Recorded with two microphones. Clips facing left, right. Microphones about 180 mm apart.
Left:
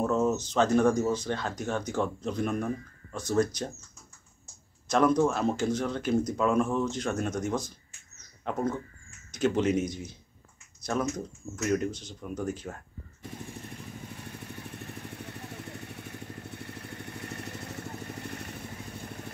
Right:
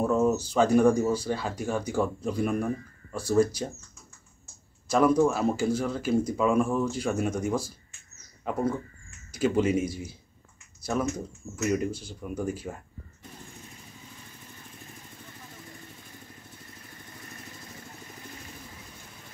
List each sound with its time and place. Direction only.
0.0 s speech: 10° right (ahead or behind)
4.8 s speech: 5° right (ahead or behind)
13.6 s vehicle: 60° left (ahead or behind)